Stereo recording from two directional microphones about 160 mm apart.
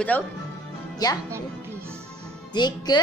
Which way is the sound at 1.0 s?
25° left (ahead or behind).